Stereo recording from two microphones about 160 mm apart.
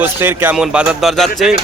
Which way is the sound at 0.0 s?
10° right (ahead or behind).